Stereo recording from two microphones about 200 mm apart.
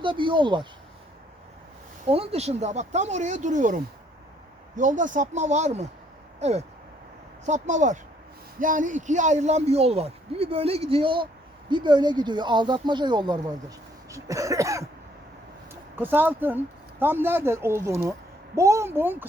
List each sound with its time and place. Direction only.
0.0 s speech: 25° right (ahead or behind)
2.0 s speech: 30° right (ahead or behind); by 19.3 s 10° right (ahead or behind)